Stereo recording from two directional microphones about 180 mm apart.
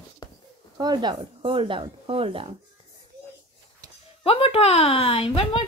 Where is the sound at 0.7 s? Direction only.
25° right (ahead or behind).